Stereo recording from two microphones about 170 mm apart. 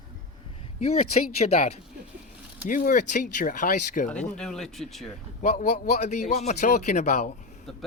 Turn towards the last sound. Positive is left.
turn(degrees=55)  # may be behind; listen again after turning